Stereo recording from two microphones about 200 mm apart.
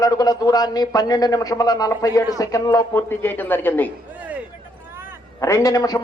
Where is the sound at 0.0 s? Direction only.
20° left (ahead or behind).